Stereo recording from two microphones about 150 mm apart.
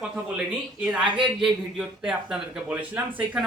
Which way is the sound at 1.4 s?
5° right (ahead or behind).